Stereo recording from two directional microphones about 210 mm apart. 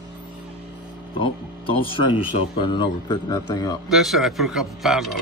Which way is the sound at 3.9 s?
Centre (ahead or behind).